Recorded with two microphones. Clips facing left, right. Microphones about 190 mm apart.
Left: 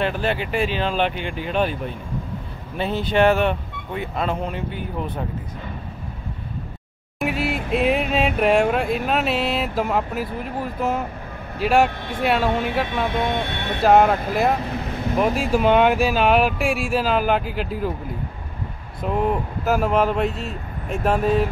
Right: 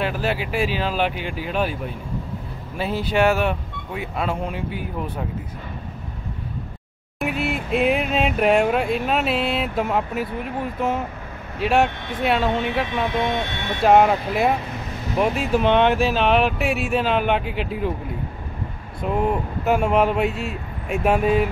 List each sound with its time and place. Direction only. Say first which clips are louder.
0.0 s music: left 1 dB; 5° right (ahead or behind)
2.8 s speech: left 1 dB; 5° right (ahead or behind)
7.2 s music: left 1 dB; centre (ahead or behind)
13.8 s music: even; centre (ahead or behind)
19.0 s music: even; centre (ahead or behind)